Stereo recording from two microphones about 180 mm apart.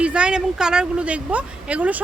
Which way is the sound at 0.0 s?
5° right (ahead or behind).